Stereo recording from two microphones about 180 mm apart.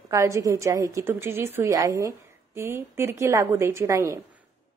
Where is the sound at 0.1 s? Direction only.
15° right (ahead or behind).